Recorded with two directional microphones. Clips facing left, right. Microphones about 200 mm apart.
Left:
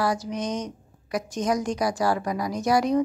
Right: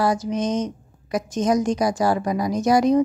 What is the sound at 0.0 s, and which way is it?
A woman's voice, 20° right (ahead or behind).